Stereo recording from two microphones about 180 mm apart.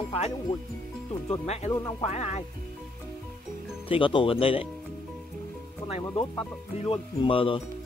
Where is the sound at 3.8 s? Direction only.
30° left (ahead or behind).